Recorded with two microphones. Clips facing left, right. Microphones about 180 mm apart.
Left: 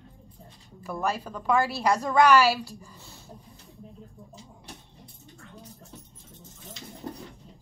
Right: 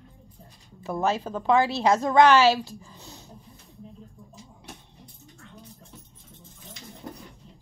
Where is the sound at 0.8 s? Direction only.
25° right (ahead or behind).